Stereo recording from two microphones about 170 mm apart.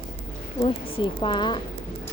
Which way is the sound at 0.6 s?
30° left (ahead or behind).